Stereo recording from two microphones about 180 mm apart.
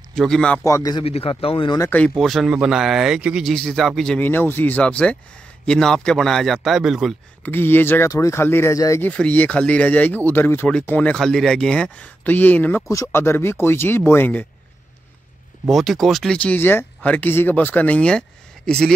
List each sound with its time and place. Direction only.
0.1 s a man's voice: 5° left (ahead or behind)
0.7 s speech: 20° left (ahead or behind)
1.0 s speech: 35° left (ahead or behind)
1.8 s a man's voice: 10° left (ahead or behind)
7.4 s speech: 10° left (ahead or behind)
15.7 s a man's voice: centre (ahead or behind)